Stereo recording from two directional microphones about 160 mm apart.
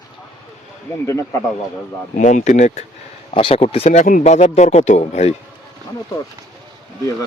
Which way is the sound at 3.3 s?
35° left (ahead or behind).